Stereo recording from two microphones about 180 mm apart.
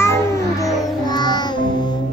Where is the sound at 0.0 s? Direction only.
15° left (ahead or behind).